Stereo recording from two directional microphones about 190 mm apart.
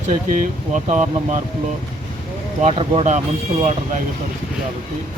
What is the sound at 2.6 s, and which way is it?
Speech, 30° right (ahead or behind).